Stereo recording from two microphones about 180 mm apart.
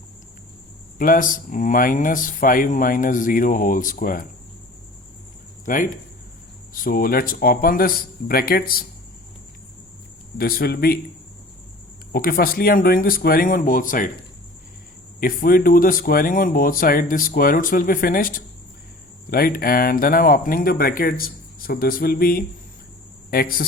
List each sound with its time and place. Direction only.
0.9 s speech: 50° left (ahead or behind)
5.6 s speech: 50° left (ahead or behind)
10.3 s speech: 55° left (ahead or behind)
12.1 s speech: 55° left (ahead or behind)
15.2 s speech: 50° left (ahead or behind)